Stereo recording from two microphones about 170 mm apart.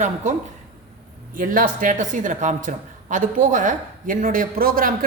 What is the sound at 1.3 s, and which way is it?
A woman's voice, 55° right (ahead or behind).